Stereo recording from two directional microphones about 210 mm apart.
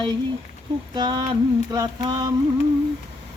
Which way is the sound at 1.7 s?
20° right (ahead or behind).